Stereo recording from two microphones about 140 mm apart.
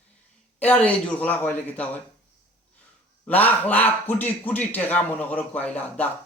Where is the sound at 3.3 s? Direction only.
10° left (ahead or behind).